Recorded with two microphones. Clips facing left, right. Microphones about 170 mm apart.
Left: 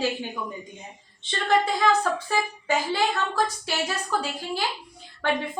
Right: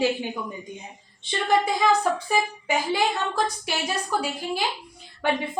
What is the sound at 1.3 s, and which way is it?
A woman's voice, 15° right (ahead or behind).